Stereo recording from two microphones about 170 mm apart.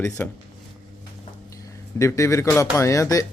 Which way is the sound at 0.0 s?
15° left (ahead or behind).